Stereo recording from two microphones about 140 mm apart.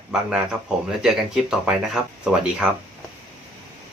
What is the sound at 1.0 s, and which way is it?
Music, 5° right (ahead or behind).